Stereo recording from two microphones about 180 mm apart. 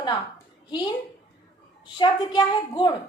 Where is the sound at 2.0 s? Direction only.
25° left (ahead or behind).